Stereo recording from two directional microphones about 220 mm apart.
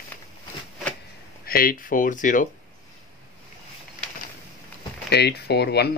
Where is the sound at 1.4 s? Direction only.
40° left (ahead or behind).